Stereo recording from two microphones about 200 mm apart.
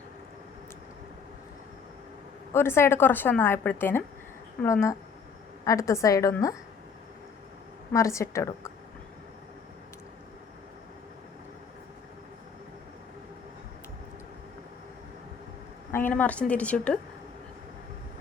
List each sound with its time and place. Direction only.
2.5 s a woman's voice: 10° left (ahead or behind)
7.9 s a woman's voice: 15° left (ahead or behind)
15.9 s a woman's voice: 10° left (ahead or behind)